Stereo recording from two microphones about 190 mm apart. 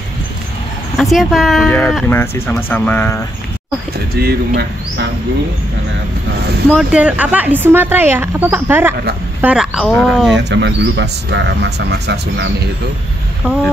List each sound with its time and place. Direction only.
0.9 s speech: centre (ahead or behind)
4.2 s speech: 60° right (ahead or behind)
6.7 s speech: 5° right (ahead or behind)
10.3 s speech: 70° right (ahead or behind)